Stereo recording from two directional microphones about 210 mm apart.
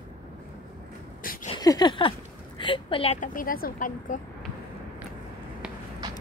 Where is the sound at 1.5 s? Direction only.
20° left (ahead or behind).